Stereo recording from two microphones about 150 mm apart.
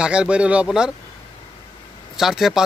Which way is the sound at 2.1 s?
Centre (ahead or behind).